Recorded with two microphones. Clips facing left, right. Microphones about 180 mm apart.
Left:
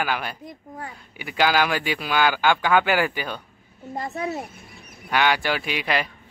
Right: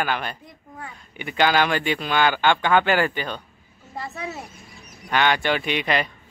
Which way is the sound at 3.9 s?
45° left (ahead or behind).